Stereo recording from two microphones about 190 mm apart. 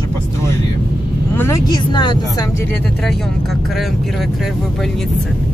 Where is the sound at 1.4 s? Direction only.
20° left (ahead or behind).